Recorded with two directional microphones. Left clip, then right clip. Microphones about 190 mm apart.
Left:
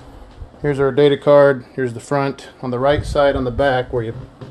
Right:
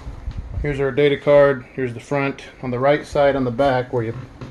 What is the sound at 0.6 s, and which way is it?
Speech, 25° left (ahead or behind).